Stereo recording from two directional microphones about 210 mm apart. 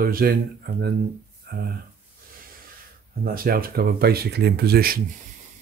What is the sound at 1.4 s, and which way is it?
Speech, 45° right (ahead or behind).